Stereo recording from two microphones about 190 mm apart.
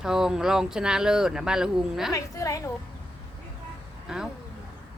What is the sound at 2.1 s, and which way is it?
Speech, 15° left (ahead or behind).